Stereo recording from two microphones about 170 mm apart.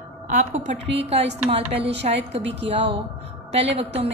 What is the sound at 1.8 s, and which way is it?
Speech, 90° right.